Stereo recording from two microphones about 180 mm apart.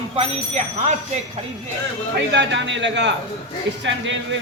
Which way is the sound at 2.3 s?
80° right.